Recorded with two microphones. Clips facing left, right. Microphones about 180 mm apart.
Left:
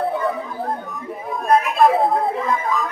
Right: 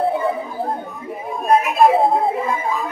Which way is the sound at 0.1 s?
25° right (ahead or behind).